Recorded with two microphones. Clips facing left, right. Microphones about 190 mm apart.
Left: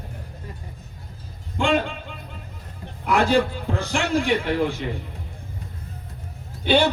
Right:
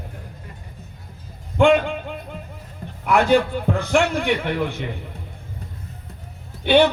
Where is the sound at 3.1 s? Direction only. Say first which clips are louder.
Right 3 dB; 55° right (ahead or behind).